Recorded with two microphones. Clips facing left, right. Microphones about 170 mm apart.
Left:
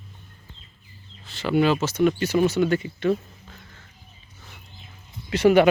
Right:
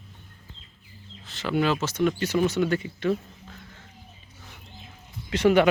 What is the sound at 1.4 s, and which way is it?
Speech, 5° left (ahead or behind).